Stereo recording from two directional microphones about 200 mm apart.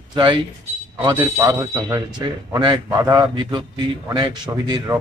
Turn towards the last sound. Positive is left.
turn(degrees=-20)  # may be behind; listen again after turning